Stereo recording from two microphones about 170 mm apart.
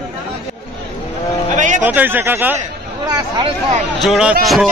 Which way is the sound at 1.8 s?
10° right (ahead or behind).